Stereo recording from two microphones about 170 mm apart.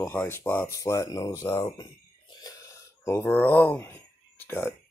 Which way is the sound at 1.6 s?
20° left (ahead or behind).